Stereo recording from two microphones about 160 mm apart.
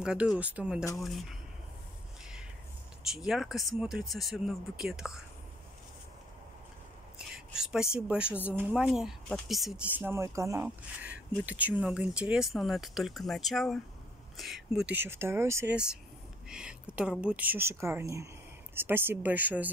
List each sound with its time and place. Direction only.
0.0 s speech: 5° right (ahead or behind)
3.1 s speech: centre (ahead or behind)
7.2 s speech: 5° right (ahead or behind)
15.7 s speech: 5° right (ahead or behind)